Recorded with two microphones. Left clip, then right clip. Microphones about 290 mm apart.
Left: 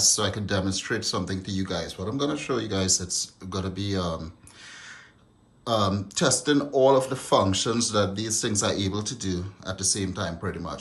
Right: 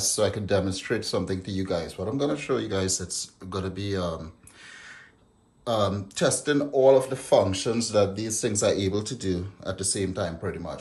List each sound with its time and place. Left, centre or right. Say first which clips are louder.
0.0 s speech: left 1 dB; centre
5.7 s speech: even; centre